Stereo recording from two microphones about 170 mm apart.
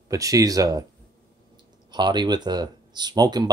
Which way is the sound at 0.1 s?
20° right (ahead or behind).